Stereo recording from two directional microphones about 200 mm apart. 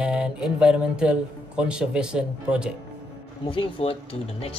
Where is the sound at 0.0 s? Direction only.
5° right (ahead or behind).